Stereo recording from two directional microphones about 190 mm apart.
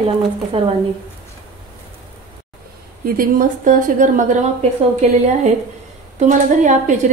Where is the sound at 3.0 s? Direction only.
45° right (ahead or behind).